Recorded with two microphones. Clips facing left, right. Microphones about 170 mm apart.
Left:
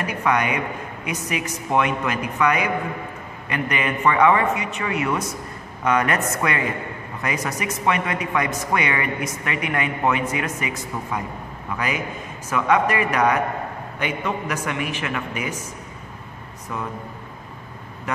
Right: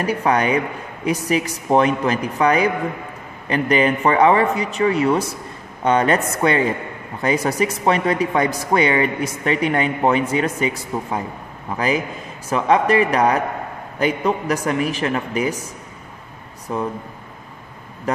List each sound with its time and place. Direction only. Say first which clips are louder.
0.0 s speech: right 4 dB; 35° right (ahead or behind)
16.7 s speech: right 6 dB; 35° right (ahead or behind)
18.1 s speech: right 6 dB; 35° right (ahead or behind)